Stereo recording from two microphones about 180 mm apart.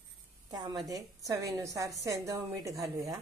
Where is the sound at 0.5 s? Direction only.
25° right (ahead or behind).